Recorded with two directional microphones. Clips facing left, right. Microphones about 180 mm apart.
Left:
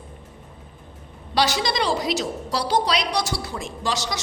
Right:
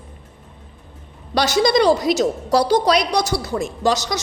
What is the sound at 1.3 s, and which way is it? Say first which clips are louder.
A woman's voice: right 6 dB; 45° right (ahead or behind).